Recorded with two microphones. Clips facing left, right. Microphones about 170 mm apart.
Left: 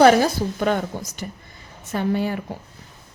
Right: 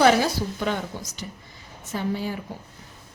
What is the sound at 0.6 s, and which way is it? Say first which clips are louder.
A woman's voice: left 7 dB; 50° left (ahead or behind).